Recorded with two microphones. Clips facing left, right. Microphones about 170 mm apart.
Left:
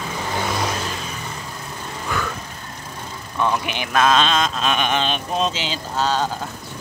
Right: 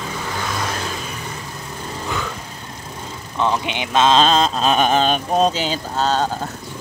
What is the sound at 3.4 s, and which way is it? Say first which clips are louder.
Speech: right 1 dB; 20° right (ahead or behind).